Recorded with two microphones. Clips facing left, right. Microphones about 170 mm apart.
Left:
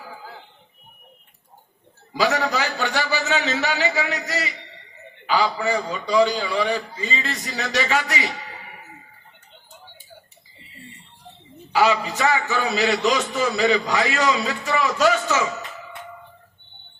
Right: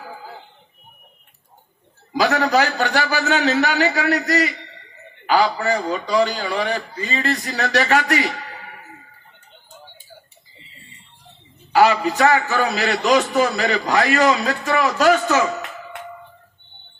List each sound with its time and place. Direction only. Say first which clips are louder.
2.3 s a man's voice: right 5 dB; 60° right (ahead or behind)
11.8 s a man's voice: right 4 dB; 55° right (ahead or behind)